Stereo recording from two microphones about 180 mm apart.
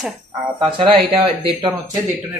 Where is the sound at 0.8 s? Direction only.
30° right (ahead or behind).